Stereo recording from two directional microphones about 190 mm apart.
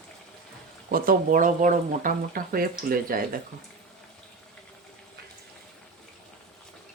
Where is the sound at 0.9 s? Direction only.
45° right (ahead or behind).